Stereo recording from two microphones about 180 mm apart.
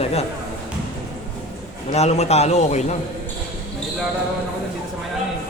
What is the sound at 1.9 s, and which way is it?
Speech, 35° left (ahead or behind).